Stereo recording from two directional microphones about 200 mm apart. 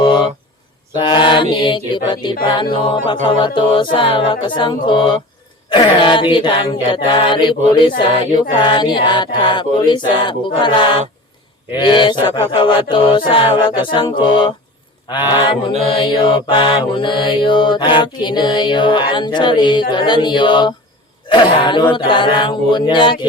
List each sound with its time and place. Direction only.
1.0 s chant: 25° left (ahead or behind)